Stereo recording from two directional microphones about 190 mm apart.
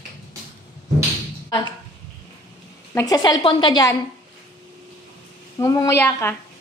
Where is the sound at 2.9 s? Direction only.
15° left (ahead or behind).